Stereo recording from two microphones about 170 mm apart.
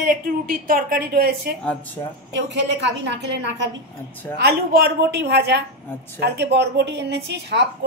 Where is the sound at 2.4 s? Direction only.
90° right.